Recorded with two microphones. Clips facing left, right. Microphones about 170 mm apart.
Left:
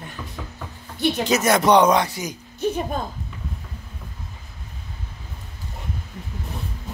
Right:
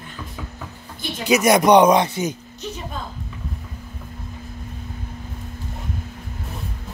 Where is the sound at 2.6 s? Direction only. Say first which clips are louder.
Left 8 dB; 55° left (ahead or behind).